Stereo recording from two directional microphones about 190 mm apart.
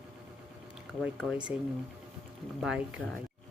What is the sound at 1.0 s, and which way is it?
Speech, 5° right (ahead or behind).